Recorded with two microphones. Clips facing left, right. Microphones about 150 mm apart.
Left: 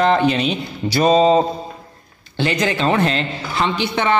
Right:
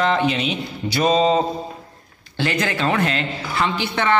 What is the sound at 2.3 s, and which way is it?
A woman's voice, 20° left (ahead or behind).